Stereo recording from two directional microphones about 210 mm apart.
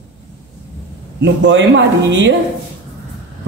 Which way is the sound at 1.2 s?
60° right (ahead or behind).